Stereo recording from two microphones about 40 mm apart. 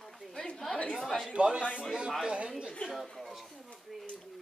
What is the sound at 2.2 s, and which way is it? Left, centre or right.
Speech, right.